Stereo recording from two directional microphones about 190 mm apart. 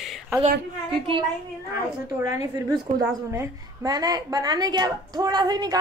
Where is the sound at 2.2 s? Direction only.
15° right (ahead or behind).